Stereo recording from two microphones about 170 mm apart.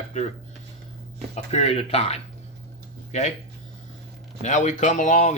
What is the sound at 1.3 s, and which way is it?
Speech, 40° left (ahead or behind).